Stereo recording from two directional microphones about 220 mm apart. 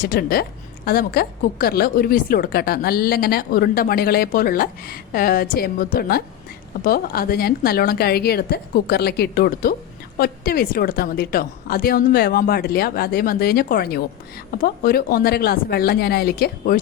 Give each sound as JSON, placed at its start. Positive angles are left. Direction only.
{"t": 0.0, "sound": "a woman's voice", "side_deg": 45}